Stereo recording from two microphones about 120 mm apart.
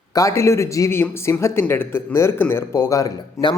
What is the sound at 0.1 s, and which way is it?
Speech, 30° left (ahead or behind).